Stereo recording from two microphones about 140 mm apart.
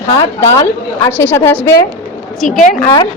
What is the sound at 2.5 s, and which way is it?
Speech, 70° left (ahead or behind).